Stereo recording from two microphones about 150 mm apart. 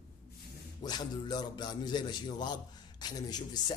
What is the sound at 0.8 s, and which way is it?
A man's voice, 25° left (ahead or behind).